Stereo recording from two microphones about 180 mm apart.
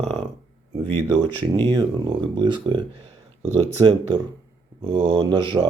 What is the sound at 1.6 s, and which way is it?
Speech, 25° right (ahead or behind).